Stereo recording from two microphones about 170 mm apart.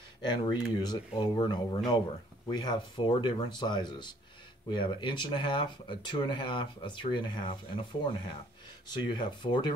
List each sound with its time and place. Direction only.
0.2 s speech: 25° left (ahead or behind)